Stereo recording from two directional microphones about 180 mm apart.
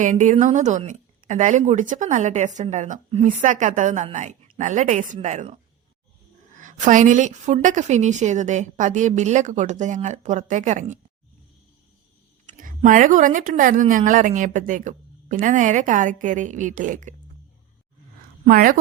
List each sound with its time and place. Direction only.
0.0 s speech: 45° right (ahead or behind)
6.6 s speech: 45° right (ahead or behind)
12.5 s speech: 45° right (ahead or behind)
18.4 s speech: 50° right (ahead or behind)